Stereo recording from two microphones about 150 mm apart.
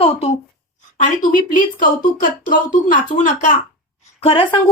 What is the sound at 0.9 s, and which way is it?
Speech, 65° left (ahead or behind).